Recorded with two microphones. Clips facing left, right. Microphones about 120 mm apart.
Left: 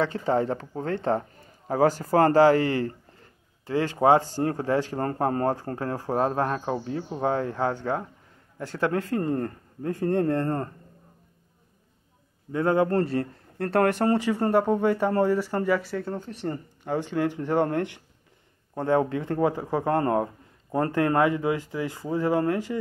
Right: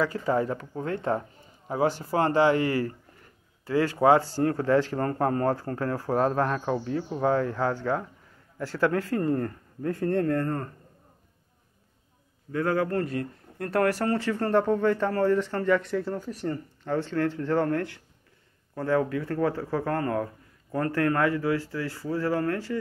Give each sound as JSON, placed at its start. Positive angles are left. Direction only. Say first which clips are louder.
{"t": 0.0, "sound": "speech", "louder": "left 1 dB", "side_deg": 25}
{"t": 1.7, "sound": "a man's voice", "louder": "left 4 dB", "side_deg": 45}
{"t": 12.5, "sound": "speech", "louder": "left 3 dB", "side_deg": 25}
{"t": 16.8, "sound": "speech", "louder": "left 1 dB", "side_deg": 15}